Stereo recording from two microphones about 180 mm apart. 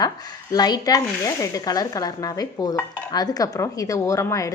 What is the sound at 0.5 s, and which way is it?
Speech, 20° left (ahead or behind).